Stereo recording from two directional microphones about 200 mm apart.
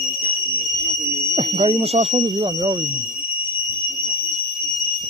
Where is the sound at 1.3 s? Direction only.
30° right (ahead or behind).